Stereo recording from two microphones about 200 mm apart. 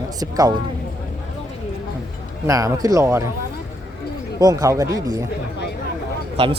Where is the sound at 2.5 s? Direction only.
15° right (ahead or behind).